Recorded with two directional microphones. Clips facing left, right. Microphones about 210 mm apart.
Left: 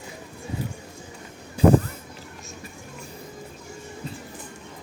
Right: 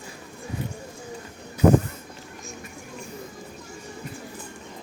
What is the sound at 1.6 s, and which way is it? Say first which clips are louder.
Speech: left 1 dB; 30° left (ahead or behind).